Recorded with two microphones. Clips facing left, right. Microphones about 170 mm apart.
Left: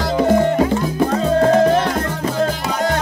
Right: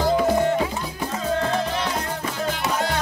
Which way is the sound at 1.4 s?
45° left (ahead or behind).